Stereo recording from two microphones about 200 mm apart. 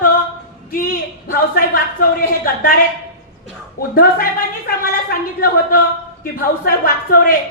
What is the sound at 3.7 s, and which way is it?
Speech, 45° left (ahead or behind).